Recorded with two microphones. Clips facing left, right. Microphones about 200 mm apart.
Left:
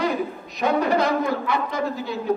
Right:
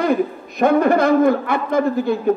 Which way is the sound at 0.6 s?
50° right (ahead or behind).